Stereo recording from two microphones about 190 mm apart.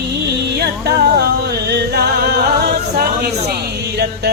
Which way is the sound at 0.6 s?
55° right (ahead or behind).